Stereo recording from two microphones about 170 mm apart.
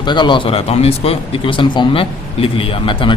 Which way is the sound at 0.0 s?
25° left (ahead or behind).